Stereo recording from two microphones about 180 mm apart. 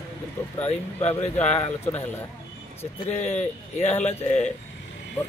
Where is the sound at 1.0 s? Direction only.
40° left (ahead or behind).